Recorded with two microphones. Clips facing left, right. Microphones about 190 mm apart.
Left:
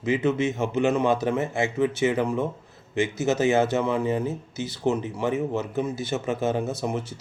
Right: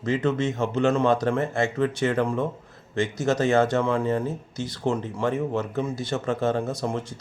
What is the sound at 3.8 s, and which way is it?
Speech, 15° left (ahead or behind).